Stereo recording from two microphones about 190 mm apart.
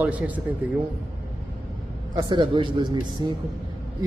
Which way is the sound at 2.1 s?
25° right (ahead or behind).